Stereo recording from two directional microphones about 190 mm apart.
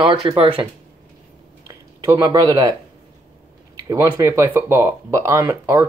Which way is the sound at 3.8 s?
15° right (ahead or behind).